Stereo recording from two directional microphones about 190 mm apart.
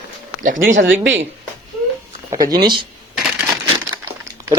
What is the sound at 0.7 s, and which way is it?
Speech, 80° right.